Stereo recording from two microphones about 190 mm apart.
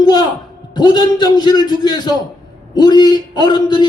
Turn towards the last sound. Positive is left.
turn(degrees=20)  # may be behind; listen again after turning